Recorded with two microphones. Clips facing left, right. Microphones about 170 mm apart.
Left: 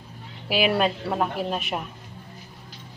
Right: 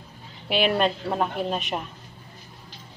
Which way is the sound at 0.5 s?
5° left (ahead or behind).